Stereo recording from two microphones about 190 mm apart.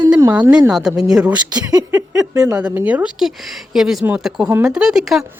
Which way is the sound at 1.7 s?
15° right (ahead or behind).